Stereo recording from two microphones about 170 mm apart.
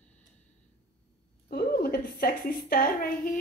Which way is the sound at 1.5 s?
65° left (ahead or behind).